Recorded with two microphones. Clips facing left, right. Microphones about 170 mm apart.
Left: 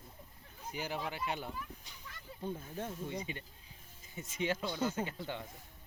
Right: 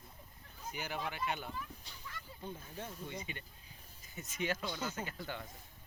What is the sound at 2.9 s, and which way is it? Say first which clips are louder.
Speech: left 4 dB; 30° left (ahead or behind).